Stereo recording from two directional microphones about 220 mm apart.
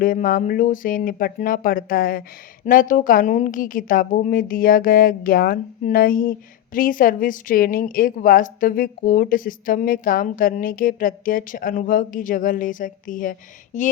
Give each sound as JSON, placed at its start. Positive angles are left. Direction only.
{"t": 0.0, "sound": "a woman's voice", "side_deg": 40}